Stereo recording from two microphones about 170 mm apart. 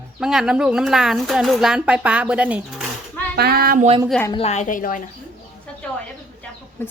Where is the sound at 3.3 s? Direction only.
65° right (ahead or behind).